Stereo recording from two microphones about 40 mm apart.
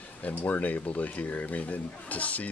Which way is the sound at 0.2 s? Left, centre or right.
Left.